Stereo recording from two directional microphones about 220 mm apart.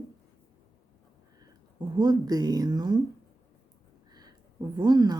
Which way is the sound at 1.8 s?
20° right (ahead or behind).